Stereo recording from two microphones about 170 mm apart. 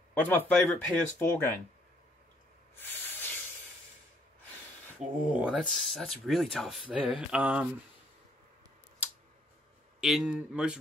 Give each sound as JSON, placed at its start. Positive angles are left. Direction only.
{"t": 0.1, "sound": "speech", "side_deg": 10}
{"t": 2.8, "sound": "hiss", "side_deg": 10}
{"t": 5.2, "sound": "speech", "side_deg": -10}
{"t": 6.9, "sound": "mantra", "side_deg": -5}
{"t": 9.9, "sound": "speech", "side_deg": -5}